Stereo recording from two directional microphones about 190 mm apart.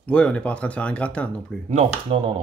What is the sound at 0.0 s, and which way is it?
Speech, 5° left (ahead or behind).